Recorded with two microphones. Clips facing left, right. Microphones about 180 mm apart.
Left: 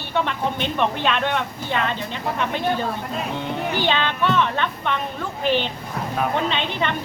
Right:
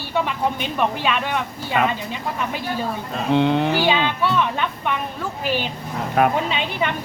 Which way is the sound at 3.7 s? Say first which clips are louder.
Right 2 dB; 10° right (ahead or behind).